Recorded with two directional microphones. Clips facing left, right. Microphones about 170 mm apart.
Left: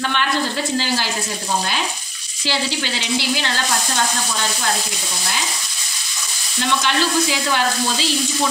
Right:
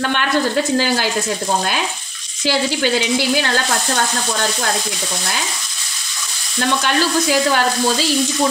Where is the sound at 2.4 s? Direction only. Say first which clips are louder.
Right 6 dB; 50° right (ahead or behind).